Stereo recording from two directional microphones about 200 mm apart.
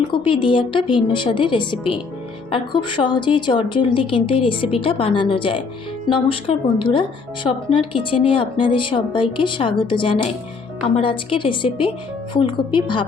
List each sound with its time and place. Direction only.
0.1 s a woman's voice: 25° left (ahead or behind)